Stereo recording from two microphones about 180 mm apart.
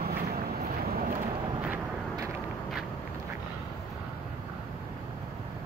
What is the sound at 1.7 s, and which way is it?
Vehicle, 15° right (ahead or behind).